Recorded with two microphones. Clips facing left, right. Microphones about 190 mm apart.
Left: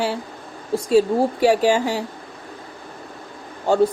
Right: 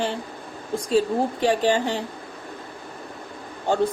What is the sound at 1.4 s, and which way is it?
Speech, 10° left (ahead or behind).